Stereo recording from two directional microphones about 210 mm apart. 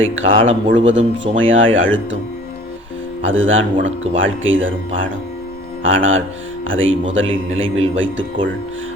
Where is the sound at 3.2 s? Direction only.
65° right (ahead or behind).